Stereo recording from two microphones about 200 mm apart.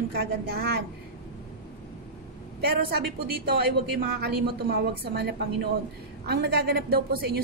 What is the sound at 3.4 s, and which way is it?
Speech, 50° right (ahead or behind).